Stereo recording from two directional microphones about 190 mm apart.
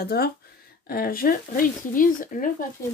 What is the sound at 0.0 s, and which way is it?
Speech, 55° left (ahead or behind).